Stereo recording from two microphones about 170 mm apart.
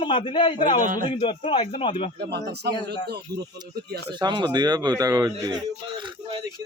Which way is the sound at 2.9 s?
70° right (ahead or behind).